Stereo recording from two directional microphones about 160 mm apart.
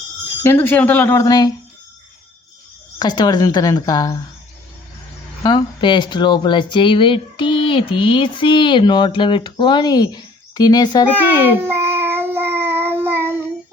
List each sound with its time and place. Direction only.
0.4 s speech: 10° left (ahead or behind)
3.0 s speech: 25° left (ahead or behind)
5.4 s speech: 25° left (ahead or behind)
11.2 s child singing: 10° right (ahead or behind)